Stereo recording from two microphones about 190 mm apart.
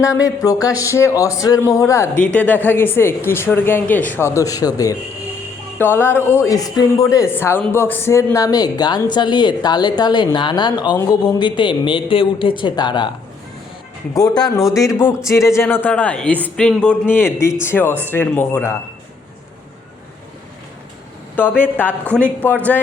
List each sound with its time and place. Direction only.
0.0 s speech: 15° left (ahead or behind)
14.1 s speech: 20° left (ahead or behind)
21.3 s speech: 10° left (ahead or behind)